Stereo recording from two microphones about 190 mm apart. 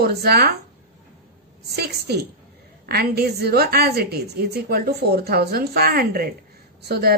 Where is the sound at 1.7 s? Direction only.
60° right (ahead or behind).